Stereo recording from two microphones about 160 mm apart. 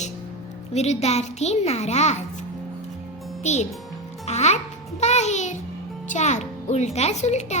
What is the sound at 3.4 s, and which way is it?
A child's voice, 45° left (ahead or behind).